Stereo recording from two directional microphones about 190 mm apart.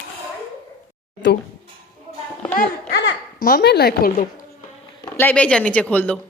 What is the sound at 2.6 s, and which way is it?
A child's voice, 60° left (ahead or behind).